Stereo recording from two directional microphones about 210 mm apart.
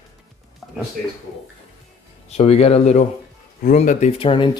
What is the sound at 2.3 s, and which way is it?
Speech, 30° left (ahead or behind).